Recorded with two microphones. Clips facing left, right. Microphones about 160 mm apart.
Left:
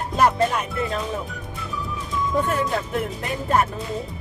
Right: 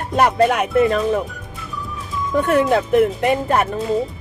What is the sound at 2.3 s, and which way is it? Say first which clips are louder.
Speech: right 9 dB; 70° right (ahead or behind).